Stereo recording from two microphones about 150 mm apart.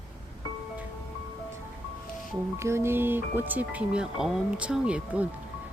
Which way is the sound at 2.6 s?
20° right (ahead or behind).